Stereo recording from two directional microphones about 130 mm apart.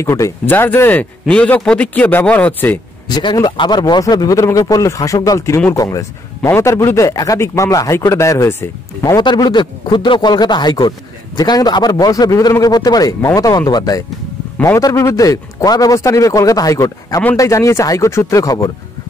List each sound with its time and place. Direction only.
0.0 s a man's voice: 20° left (ahead or behind)
3.1 s speech: 35° left (ahead or behind)
9.0 s speech: 35° left (ahead or behind)